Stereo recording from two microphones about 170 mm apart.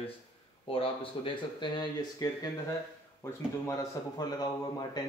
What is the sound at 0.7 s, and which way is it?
A man's voice, 30° left (ahead or behind).